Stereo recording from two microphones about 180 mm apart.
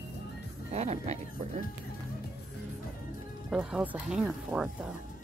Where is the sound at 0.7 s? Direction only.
40° right (ahead or behind).